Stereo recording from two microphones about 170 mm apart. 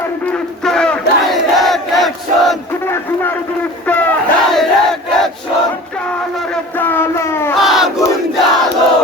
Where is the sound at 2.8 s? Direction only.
15° left (ahead or behind).